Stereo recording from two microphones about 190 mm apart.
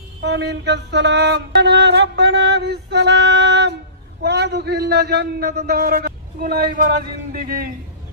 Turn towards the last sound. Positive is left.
turn(degrees=-50)  # may be behind; listen again after turning